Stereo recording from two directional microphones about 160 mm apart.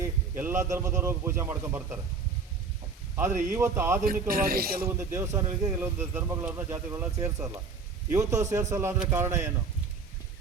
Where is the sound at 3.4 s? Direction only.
15° right (ahead or behind).